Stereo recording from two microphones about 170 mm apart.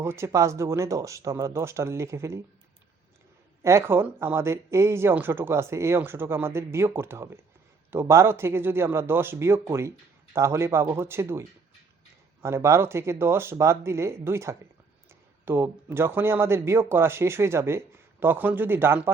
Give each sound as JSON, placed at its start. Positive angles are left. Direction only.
{"t": 0.0, "sound": "speech", "side_deg": -15}
{"t": 3.6, "sound": "speech", "side_deg": -15}